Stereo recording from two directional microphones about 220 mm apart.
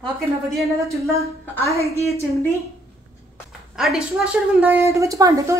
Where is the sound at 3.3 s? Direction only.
Centre (ahead or behind).